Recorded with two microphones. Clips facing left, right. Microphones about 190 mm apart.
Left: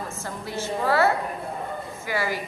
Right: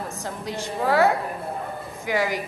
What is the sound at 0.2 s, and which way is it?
A woman's voice, 15° right (ahead or behind).